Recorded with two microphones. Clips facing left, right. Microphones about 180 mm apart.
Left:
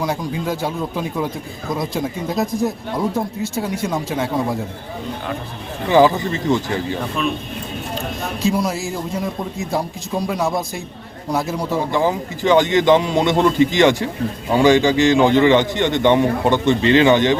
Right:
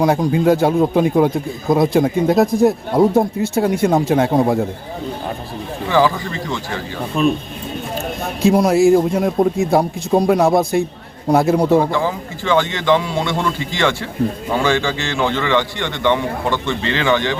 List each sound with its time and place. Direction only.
0.0 s speech: 55° right (ahead or behind)
5.9 s speech: 20° left (ahead or behind)
7.2 s speech: 35° right (ahead or behind)
8.4 s speech: 55° right (ahead or behind)
11.9 s a man's voice: 15° left (ahead or behind)